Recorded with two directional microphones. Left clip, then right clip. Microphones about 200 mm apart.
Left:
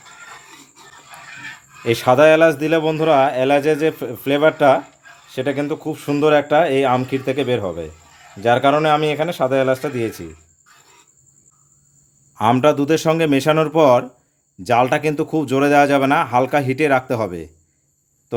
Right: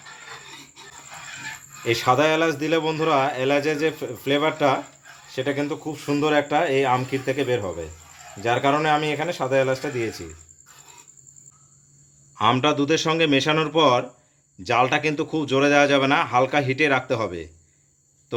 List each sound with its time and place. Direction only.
1.8 s a man's voice: 55° left (ahead or behind)
12.4 s a man's voice: 55° left (ahead or behind)